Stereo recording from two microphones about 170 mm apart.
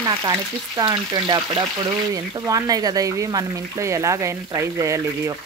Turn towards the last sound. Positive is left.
turn(degrees=-20)  # may be behind; listen again after turning